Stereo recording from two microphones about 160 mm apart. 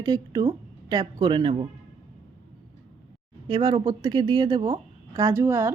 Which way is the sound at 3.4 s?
30° right (ahead or behind).